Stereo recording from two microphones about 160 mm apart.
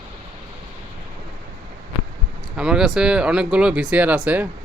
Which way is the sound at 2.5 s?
5° right (ahead or behind).